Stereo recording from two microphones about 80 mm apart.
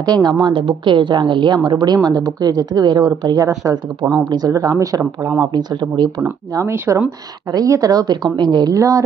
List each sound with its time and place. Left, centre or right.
0.0 s a woman's voice: right
0.4 s a woman's voice: right
3.3 s speech: right
5.4 s a woman's voice: right
6.9 s speech: right
7.5 s a woman's voice: right
8.7 s speech: right